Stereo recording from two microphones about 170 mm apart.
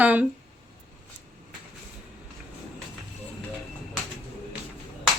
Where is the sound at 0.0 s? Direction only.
10° right (ahead or behind).